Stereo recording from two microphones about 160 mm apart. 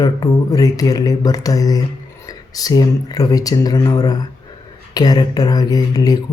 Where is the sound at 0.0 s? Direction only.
25° left (ahead or behind).